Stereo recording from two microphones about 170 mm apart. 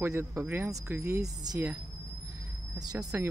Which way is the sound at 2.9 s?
20° right (ahead or behind).